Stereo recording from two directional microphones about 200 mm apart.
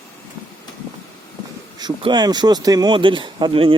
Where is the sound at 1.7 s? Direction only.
20° right (ahead or behind).